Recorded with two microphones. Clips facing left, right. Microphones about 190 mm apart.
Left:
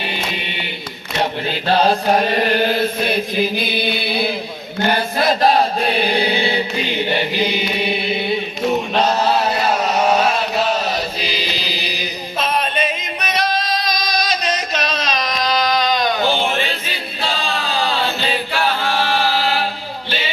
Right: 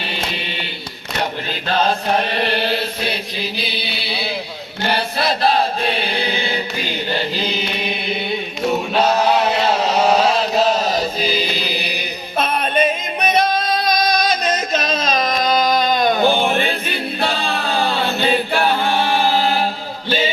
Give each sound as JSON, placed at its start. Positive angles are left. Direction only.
{"t": 1.6, "sound": "chant", "side_deg": 35}
{"t": 10.2, "sound": "chant", "side_deg": -35}
{"t": 11.3, "sound": "music", "side_deg": -55}
{"t": 13.8, "sound": "a sound", "side_deg": -55}
{"t": 19.3, "sound": "chant", "side_deg": -50}
{"t": 20.1, "sound": "music", "side_deg": -45}